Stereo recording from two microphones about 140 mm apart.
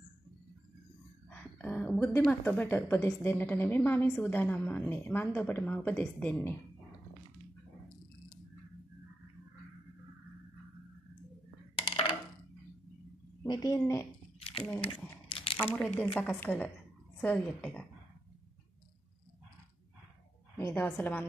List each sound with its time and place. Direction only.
1.3 s a woman's voice: 10° left (ahead or behind)
11.7 s coin: 35° left (ahead or behind)
13.5 s a woman's voice: 25° left (ahead or behind)
14.4 s crumpling: 40° left (ahead or behind)
15.2 s a sound: 40° left (ahead or behind)
16.2 s a woman's voice: 15° left (ahead or behind)
20.5 s a woman's voice: 15° left (ahead or behind)